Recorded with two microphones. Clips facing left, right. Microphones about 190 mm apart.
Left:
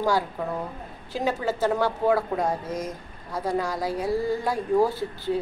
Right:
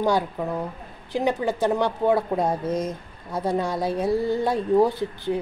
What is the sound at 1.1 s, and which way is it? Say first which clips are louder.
A woman's voice: right 3 dB; 15° right (ahead or behind).